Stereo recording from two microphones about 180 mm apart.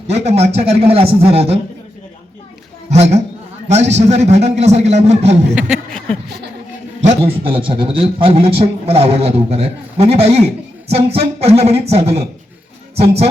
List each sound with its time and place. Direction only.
0.1 s a man's voice: 35° right (ahead or behind)
2.9 s a man's voice: 35° right (ahead or behind)
5.5 s a sound: 5° right (ahead or behind)
7.0 s a man's voice: 35° right (ahead or behind)